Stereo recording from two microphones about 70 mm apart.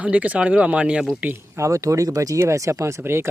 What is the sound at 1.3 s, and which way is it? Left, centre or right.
Speech, right.